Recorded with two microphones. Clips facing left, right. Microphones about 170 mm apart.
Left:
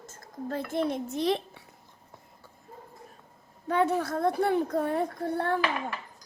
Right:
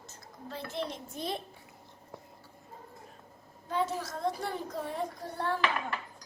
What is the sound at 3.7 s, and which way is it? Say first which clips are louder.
A woman's voice: left 7 dB; 60° left (ahead or behind).